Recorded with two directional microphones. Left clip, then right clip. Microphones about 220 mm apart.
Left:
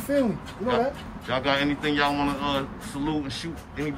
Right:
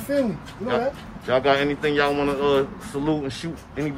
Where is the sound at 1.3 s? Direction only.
5° left (ahead or behind).